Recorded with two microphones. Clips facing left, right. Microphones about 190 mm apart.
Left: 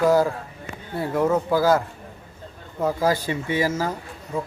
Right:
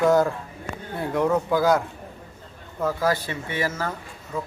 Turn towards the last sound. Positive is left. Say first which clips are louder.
# left 3 dB
turn(degrees=15)  # may be behind; listen again after turning